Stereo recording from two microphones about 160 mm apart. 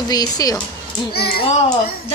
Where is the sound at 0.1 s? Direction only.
25° left (ahead or behind).